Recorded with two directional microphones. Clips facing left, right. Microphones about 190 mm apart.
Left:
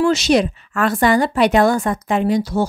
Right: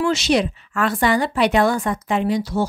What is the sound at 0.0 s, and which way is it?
A woman's voice, 40° left (ahead or behind).